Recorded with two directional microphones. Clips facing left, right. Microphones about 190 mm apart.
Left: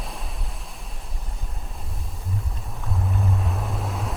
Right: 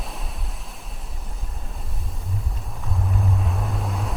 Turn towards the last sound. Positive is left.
turn(degrees=0)  # may be behind; listen again after turning